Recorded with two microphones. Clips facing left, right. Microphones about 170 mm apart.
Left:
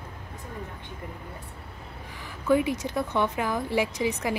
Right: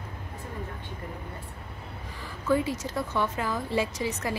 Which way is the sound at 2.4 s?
15° left (ahead or behind).